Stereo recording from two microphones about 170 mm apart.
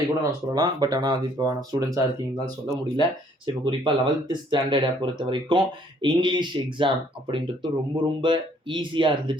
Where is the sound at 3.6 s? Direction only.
25° right (ahead or behind).